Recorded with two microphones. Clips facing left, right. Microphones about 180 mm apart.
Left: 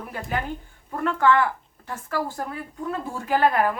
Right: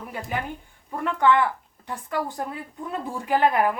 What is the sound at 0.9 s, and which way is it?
A woman's voice, 15° right (ahead or behind).